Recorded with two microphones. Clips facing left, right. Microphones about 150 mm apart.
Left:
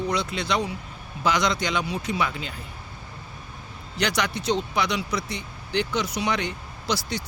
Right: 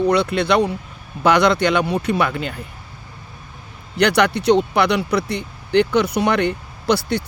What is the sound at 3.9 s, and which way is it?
Speech, 60° right (ahead or behind).